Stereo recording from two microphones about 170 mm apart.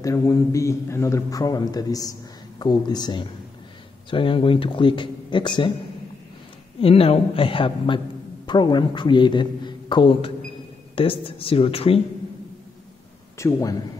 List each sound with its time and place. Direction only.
0.0 s a man's voice: 20° left (ahead or behind)
6.8 s a man's voice: 35° left (ahead or behind)
13.4 s a man's voice: 20° left (ahead or behind)